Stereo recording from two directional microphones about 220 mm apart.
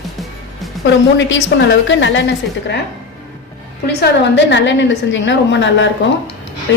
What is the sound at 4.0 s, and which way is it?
A woman's voice, 55° left (ahead or behind).